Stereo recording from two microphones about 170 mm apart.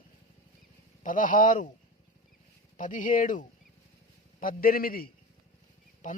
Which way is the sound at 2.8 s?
50° left (ahead or behind).